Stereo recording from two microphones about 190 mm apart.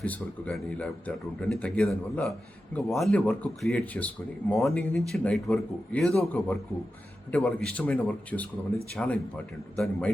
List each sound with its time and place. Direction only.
0.0 s speech: 5° left (ahead or behind)